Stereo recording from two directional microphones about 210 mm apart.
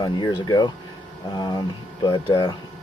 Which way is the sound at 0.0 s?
20° left (ahead or behind).